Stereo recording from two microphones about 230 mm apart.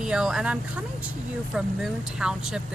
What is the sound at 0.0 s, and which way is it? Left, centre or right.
Speech, centre.